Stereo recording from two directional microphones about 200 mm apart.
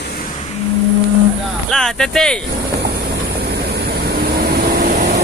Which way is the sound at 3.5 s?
55° right (ahead or behind).